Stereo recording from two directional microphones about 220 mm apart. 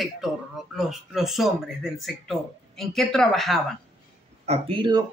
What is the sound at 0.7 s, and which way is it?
A man's voice, centre (ahead or behind).